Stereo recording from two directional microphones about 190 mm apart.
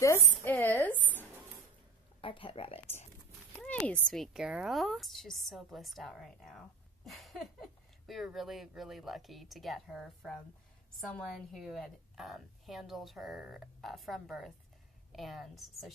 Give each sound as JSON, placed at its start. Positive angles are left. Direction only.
{"t": 0.0, "sound": "a woman's voice", "side_deg": 10}
{"t": 2.2, "sound": "speech", "side_deg": 30}
{"t": 3.5, "sound": "a woman's voice", "side_deg": 5}